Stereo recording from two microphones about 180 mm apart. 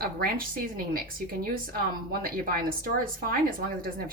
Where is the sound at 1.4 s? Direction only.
50° right (ahead or behind).